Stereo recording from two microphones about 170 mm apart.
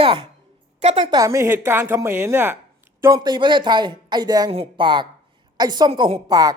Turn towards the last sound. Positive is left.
turn(degrees=-20)  # may be behind; listen again after turning